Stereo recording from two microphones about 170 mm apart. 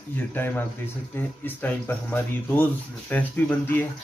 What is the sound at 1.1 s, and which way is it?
Speech, 10° left (ahead or behind).